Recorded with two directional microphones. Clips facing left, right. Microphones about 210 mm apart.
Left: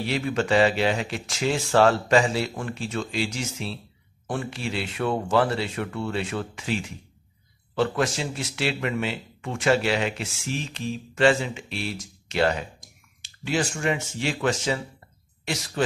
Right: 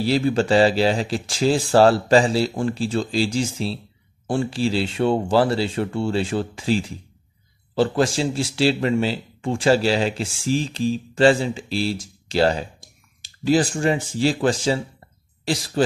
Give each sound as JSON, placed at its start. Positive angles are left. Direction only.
{"t": 0.0, "sound": "speech", "side_deg": -30}